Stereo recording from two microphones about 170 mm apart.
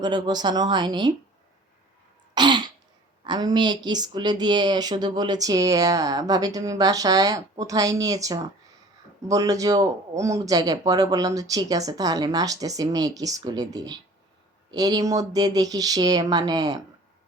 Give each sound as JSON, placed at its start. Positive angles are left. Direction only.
{"t": 0.0, "sound": "speech", "side_deg": -25}
{"t": 2.3, "sound": "throat clearing", "side_deg": -25}
{"t": 3.2, "sound": "speech", "side_deg": -25}